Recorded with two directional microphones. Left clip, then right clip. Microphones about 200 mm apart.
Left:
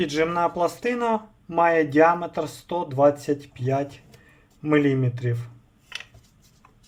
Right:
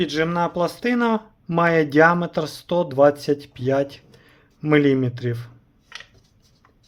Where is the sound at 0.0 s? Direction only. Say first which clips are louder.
Right 1 dB; 10° right (ahead or behind).